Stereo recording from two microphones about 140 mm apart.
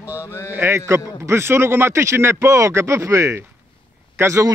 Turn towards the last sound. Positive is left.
turn(degrees=-20)  # may be behind; listen again after turning